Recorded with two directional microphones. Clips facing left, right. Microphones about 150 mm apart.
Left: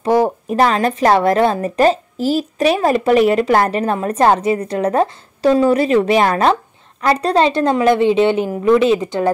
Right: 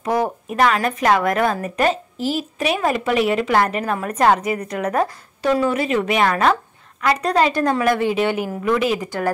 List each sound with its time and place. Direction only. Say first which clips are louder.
0.0 s speech: left 6 dB; 30° left (ahead or behind)